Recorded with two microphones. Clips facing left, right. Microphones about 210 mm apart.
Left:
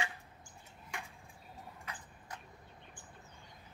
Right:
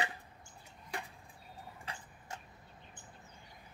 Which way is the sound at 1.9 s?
30° right (ahead or behind).